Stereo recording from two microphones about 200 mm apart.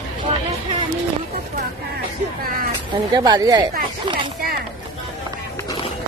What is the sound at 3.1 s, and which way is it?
Speech, 20° right (ahead or behind).